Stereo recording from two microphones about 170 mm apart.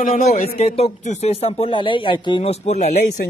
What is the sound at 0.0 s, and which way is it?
Speech, 55° left (ahead or behind).